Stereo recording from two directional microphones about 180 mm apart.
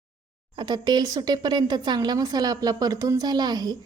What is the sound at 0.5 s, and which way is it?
Speech, 25° right (ahead or behind).